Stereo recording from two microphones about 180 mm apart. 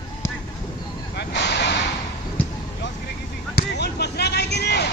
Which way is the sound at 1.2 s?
70° left (ahead or behind).